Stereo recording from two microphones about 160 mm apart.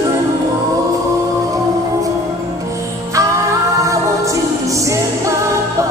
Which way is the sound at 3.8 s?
20° right (ahead or behind).